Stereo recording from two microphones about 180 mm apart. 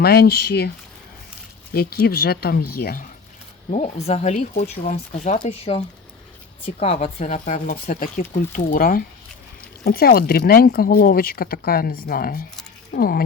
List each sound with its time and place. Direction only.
0.0 s speech: 60° left (ahead or behind)
1.7 s speech: 60° left (ahead or behind)
3.7 s speech: 40° left (ahead or behind)
7.2 s speech: 45° left (ahead or behind)